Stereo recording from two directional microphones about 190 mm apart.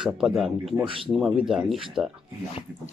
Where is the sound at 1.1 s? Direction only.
5° right (ahead or behind).